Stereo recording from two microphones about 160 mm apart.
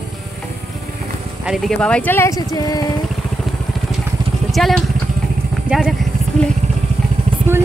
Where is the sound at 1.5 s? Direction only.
Centre (ahead or behind); by 2.8 s 20° left (ahead or behind).